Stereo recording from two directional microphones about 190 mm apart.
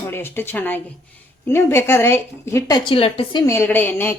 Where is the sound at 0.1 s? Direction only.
10° left (ahead or behind); by 3.4 s 30° left (ahead or behind).